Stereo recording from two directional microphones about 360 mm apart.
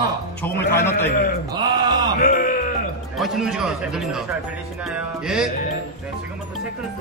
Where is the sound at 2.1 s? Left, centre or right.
Left.